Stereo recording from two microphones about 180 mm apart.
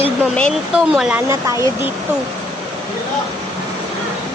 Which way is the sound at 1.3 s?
15° right (ahead or behind).